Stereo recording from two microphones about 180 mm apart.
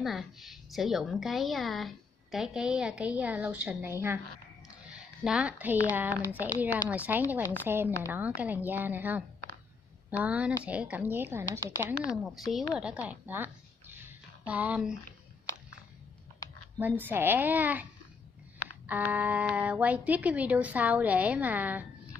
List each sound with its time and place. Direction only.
0.0 s a woman's voice: centre (ahead or behind)
16.7 s a woman's voice: 10° right (ahead or behind)
18.9 s a woman's voice: 10° right (ahead or behind)